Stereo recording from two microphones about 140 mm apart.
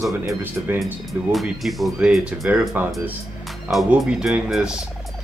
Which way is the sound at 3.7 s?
5° right (ahead or behind).